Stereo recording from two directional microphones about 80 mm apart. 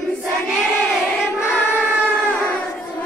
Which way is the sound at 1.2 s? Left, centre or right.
Left.